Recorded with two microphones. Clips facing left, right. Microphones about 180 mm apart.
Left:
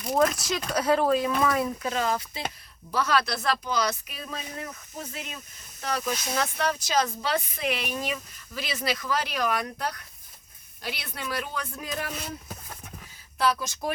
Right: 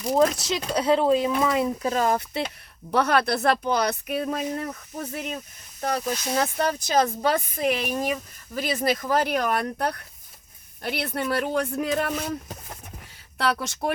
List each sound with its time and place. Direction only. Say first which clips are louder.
0.0 s speech: right 3 dB; 30° right (ahead or behind)
1.8 s speech: right 4 dB; 40° right (ahead or behind)
2.9 s speech: right 5 dB; 60° right (ahead or behind)
6.1 s speech: right 3 dB; 35° right (ahead or behind); by 12.1 s 55° right (ahead or behind)
13.4 s speech: right 1 dB; 65° right (ahead or behind)